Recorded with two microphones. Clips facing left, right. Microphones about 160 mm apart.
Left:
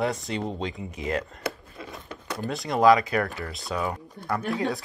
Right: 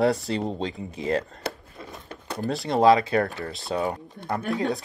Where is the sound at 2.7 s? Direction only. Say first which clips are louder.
Right 1 dB; 30° right (ahead or behind).